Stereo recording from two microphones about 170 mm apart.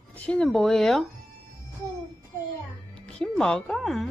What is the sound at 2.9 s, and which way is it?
Speech, 5° left (ahead or behind).